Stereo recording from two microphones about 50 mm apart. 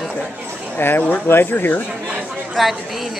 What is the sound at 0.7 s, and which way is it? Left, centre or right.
Speech, left.